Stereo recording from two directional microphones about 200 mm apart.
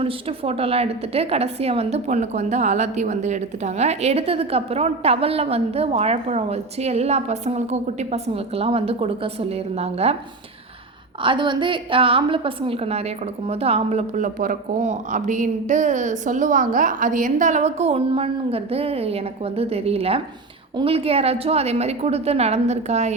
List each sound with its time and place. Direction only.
0.0 s a woman's voice: 30° right (ahead or behind)
11.2 s a woman's voice: 25° right (ahead or behind)